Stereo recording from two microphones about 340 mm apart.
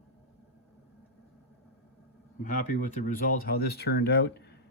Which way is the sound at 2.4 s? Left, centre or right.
Left.